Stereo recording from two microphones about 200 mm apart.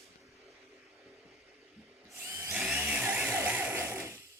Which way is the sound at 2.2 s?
15° right (ahead or behind).